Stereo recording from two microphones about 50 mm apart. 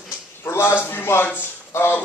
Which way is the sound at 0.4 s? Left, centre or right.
Left.